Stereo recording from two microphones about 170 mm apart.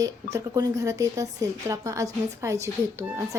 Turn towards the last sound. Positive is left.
turn(degrees=-15)  # may be behind; listen again after turning